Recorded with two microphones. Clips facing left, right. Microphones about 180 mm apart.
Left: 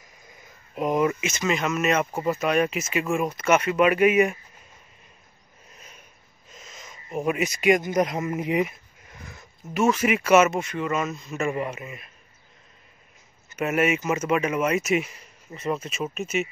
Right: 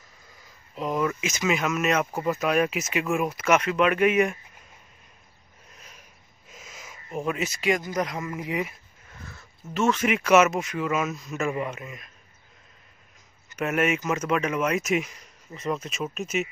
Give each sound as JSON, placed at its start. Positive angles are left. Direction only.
{"t": 0.4, "sound": "a sound", "side_deg": 15}
{"t": 1.2, "sound": "speech", "side_deg": 0}
{"t": 6.5, "sound": "wheeze", "side_deg": -5}
{"t": 7.2, "sound": "speech", "side_deg": 10}
{"t": 13.6, "sound": "speech", "side_deg": 0}